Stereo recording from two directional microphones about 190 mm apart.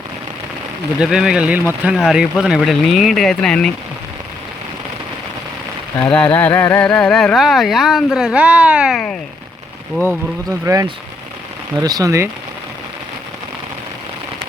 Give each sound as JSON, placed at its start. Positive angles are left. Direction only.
{"t": 0.9, "sound": "speech", "side_deg": -5}
{"t": 6.0, "sound": "speech", "side_deg": 5}
{"t": 10.7, "sound": "speech", "side_deg": -20}